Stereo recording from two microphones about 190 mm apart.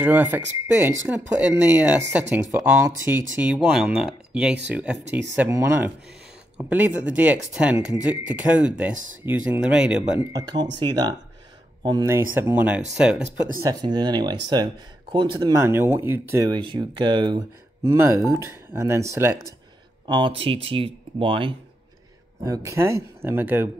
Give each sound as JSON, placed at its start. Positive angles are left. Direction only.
{"t": 0.0, "sound": "speech", "side_deg": -10}
{"t": 10.3, "sound": "speech", "side_deg": -20}
{"t": 12.4, "sound": "speech", "side_deg": -10}
{"t": 13.7, "sound": "speech", "side_deg": -20}
{"t": 17.8, "sound": "speech", "side_deg": -15}
{"t": 20.1, "sound": "speech", "side_deg": -25}
{"t": 22.4, "sound": "speech", "side_deg": -15}